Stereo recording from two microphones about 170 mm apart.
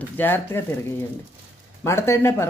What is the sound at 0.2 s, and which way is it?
Speech, 15° left (ahead or behind).